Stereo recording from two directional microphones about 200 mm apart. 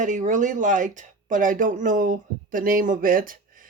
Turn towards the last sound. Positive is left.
turn(degrees=-45)  # may be behind; listen again after turning